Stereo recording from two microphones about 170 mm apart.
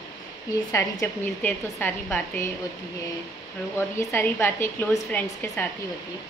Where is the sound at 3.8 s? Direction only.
15° left (ahead or behind).